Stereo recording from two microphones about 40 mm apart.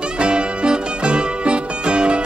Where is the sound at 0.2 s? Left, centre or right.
Right.